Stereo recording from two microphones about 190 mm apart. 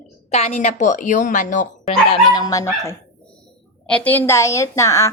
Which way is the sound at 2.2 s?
20° left (ahead or behind).